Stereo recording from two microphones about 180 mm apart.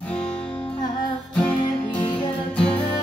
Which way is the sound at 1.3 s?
5° left (ahead or behind).